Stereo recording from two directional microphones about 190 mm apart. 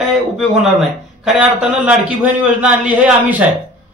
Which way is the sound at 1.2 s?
5° right (ahead or behind).